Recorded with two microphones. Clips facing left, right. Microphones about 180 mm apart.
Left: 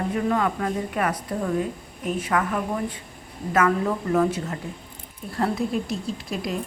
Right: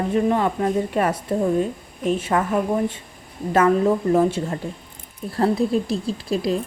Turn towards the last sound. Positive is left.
turn(degrees=-30)  # may be behind; listen again after turning